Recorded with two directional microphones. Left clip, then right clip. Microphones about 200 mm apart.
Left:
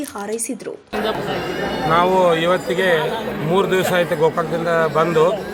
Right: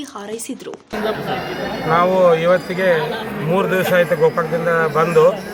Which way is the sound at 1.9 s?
10° left (ahead or behind).